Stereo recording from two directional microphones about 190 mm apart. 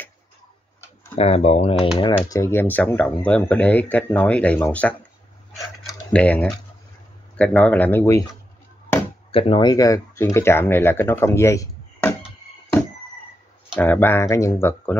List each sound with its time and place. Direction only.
1.1 s speech: 35° left (ahead or behind)
2.2 s speech: 15° left (ahead or behind)
6.1 s speech: 5° left (ahead or behind)
9.3 s speech: 30° left (ahead or behind); by 12.2 s 15° left (ahead or behind)
13.7 s speech: 10° left (ahead or behind)